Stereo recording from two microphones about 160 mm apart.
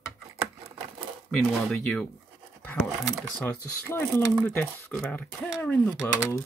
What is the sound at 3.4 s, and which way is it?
Speech, 15° left (ahead or behind).